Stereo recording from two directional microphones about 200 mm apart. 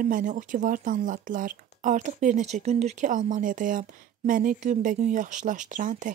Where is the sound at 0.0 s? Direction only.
40° right (ahead or behind).